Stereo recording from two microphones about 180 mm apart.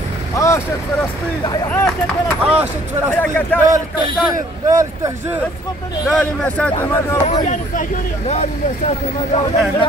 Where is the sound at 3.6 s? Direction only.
20° right (ahead or behind).